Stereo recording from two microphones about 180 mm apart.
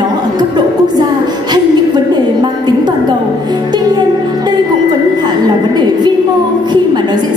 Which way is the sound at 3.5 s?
25° right (ahead or behind).